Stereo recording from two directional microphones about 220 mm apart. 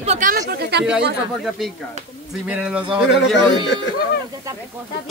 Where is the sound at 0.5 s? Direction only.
50° right (ahead or behind).